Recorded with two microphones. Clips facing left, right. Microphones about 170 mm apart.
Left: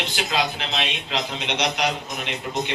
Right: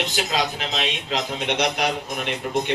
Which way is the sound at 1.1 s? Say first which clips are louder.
Right 3 dB; 50° right (ahead or behind).